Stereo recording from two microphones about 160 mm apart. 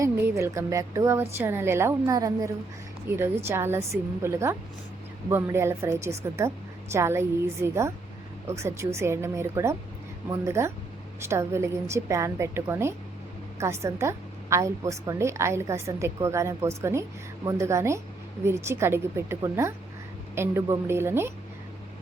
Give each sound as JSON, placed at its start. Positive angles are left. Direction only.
{"t": 0.0, "sound": "a woman's voice", "side_deg": -15}